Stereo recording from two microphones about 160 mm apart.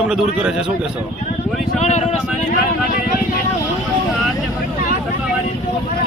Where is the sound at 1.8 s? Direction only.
45° left (ahead or behind).